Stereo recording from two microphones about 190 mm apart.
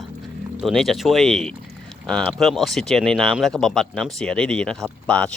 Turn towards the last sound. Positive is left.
turn(degrees=5)  # may be behind; listen again after turning